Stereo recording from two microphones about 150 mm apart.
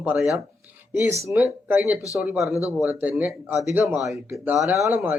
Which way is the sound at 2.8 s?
10° right (ahead or behind).